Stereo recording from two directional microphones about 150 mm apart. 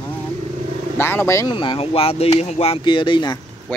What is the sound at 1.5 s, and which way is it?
Speech, 35° left (ahead or behind).